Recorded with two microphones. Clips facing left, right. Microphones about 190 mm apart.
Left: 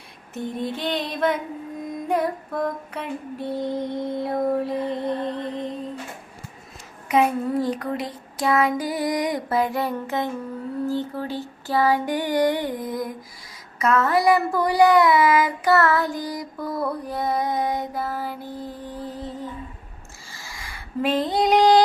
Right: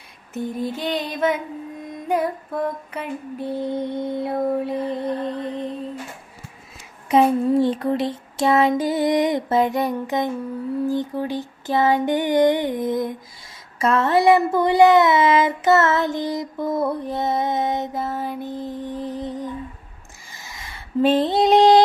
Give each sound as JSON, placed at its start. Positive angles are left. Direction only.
{"t": 0.5, "sound": "music", "side_deg": 0}
{"t": 7.1, "sound": "child singing", "side_deg": -30}
{"t": 20.3, "sound": "a sound", "side_deg": -20}